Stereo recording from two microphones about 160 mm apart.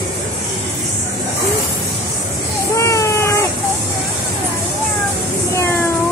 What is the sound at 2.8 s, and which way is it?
Baby cry, 20° left (ahead or behind).